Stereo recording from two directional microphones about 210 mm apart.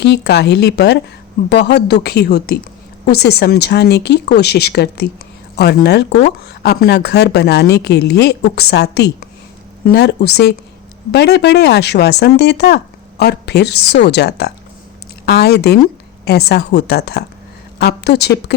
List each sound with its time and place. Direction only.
0.0 s speech: 50° left (ahead or behind)